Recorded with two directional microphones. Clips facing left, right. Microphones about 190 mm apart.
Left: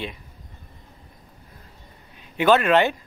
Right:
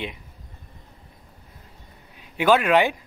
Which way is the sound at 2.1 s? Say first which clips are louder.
Left 1 dB; 10° right (ahead or behind).